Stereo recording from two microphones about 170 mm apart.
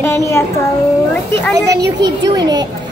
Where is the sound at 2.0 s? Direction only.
20° right (ahead or behind).